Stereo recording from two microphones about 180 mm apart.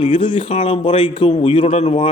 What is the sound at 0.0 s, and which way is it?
A man's voice, 30° left (ahead or behind).